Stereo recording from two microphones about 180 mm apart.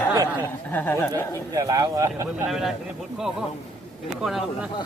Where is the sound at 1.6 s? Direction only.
20° right (ahead or behind).